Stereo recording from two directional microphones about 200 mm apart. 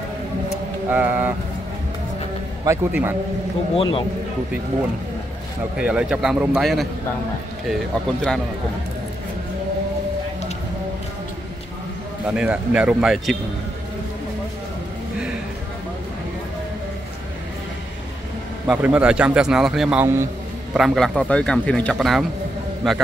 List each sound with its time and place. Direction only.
0.8 s a man's voice: 10° right (ahead or behind)
2.6 s a man's voice: 15° right (ahead or behind)
3.7 s a man's voice: 25° left (ahead or behind)
5.8 s a man's voice: 5° right (ahead or behind)
12.4 s a man's voice: 5° right (ahead or behind)
18.7 s a man's voice: 5° right (ahead or behind)